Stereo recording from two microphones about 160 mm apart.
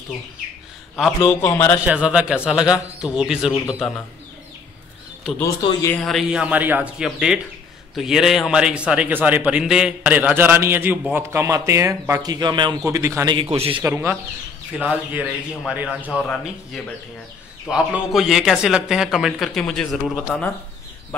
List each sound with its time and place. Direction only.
1.2 s speech: 15° left (ahead or behind)
1.9 s a man's voice: 5° right (ahead or behind)
5.6 s speech: 30° left (ahead or behind)
6.0 s a man's voice: centre (ahead or behind); by 12.7 s 30° right (ahead or behind)
12.8 s a man's voice: 20° right (ahead or behind); by 13.8 s 35° right (ahead or behind)
13.8 s a man's voice: 15° right (ahead or behind)
16.2 s a man's voice: 5° left (ahead or behind)